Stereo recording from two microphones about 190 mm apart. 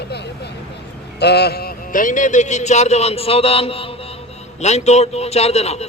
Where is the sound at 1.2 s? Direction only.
60° left (ahead or behind).